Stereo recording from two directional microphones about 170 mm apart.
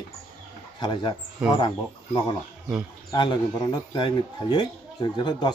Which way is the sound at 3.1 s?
25° left (ahead or behind).